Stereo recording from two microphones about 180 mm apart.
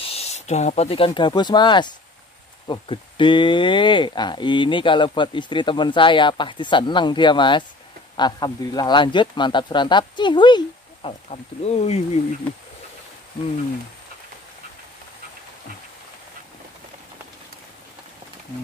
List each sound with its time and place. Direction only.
0.0 s speech: 35° left (ahead or behind)